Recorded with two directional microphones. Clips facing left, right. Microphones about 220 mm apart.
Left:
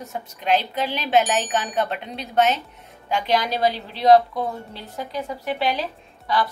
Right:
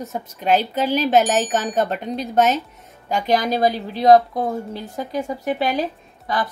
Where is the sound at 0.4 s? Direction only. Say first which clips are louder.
Right 3 dB; 45° right (ahead or behind).